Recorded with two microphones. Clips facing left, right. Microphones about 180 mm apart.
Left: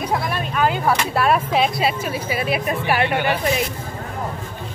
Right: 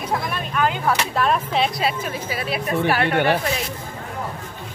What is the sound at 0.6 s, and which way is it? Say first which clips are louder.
Speech: left 2 dB; 5° left (ahead or behind).